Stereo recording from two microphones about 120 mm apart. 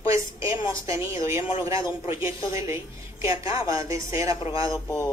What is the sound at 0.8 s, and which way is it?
A woman's voice, 25° right (ahead or behind).